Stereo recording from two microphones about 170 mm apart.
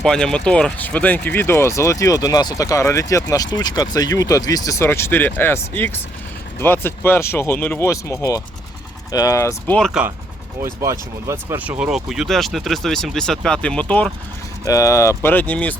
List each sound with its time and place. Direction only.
0.0 s speech: 5° left (ahead or behind)
9.7 s speech: 5° left (ahead or behind)
10.6 s speech: 15° right (ahead or behind); by 14.1 s 5° left (ahead or behind)
14.6 s speech: 20° left (ahead or behind)